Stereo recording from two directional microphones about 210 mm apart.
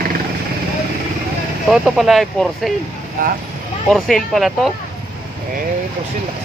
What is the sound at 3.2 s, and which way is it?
Speech, 40° right (ahead or behind).